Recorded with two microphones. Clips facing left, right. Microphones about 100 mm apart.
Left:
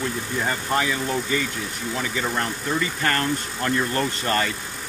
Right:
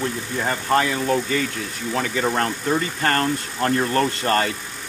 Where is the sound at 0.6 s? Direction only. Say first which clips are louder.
Right 7 dB; 45° right (ahead or behind).